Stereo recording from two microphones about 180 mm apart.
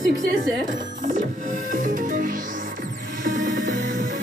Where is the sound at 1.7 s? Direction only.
45° right (ahead or behind).